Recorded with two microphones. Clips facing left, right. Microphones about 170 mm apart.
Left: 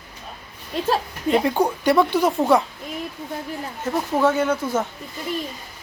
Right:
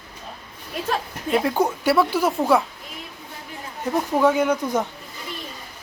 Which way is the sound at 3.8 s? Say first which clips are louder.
Right 1 dB; 15° right (ahead or behind).